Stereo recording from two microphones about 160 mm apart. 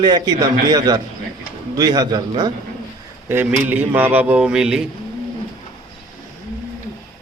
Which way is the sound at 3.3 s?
10° right (ahead or behind).